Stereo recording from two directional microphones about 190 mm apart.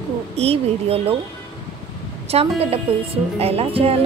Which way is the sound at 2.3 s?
30° right (ahead or behind).